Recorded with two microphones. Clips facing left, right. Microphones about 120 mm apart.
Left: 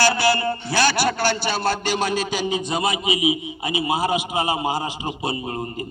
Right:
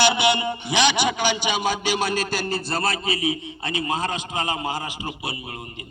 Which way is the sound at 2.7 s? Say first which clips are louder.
Left 1 dB; 15° left (ahead or behind).